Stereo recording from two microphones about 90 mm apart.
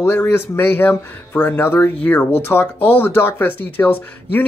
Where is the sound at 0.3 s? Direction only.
25° left (ahead or behind).